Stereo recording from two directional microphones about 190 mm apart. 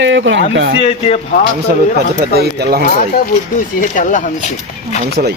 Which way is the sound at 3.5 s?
45° left (ahead or behind).